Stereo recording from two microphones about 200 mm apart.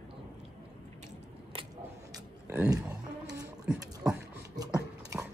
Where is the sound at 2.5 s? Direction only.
15° right (ahead or behind).